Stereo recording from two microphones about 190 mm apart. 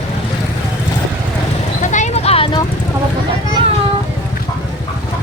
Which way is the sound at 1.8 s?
40° left (ahead or behind).